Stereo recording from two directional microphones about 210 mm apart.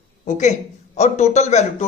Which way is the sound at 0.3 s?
35° left (ahead or behind).